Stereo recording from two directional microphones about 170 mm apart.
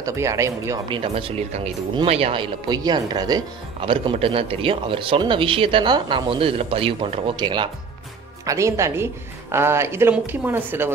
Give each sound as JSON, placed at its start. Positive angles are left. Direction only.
{"t": 0.0, "sound": "a woman's voice", "side_deg": -15}
{"t": 0.9, "sound": "a woman's voice", "side_deg": -30}